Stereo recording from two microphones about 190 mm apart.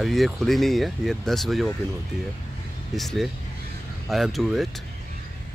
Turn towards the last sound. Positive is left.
turn(degrees=0)  # may be behind; listen again after turning